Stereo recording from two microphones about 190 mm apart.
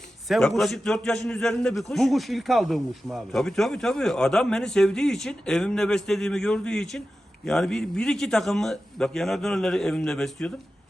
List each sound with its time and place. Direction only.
0.3 s a man's voice: centre (ahead or behind)